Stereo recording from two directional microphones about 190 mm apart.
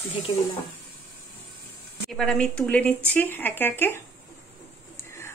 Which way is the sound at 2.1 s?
5° left (ahead or behind).